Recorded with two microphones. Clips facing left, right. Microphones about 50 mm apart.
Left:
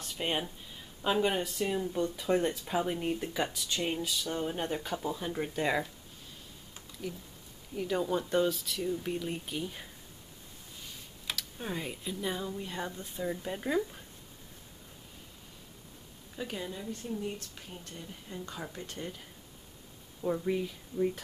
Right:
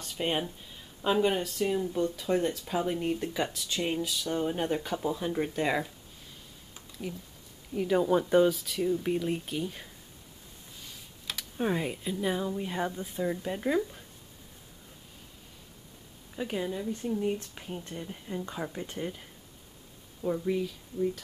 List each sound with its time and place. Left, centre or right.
0.0 s speech: centre
7.1 s speech: centre
11.3 s speech: centre
16.3 s speech: centre
20.2 s speech: centre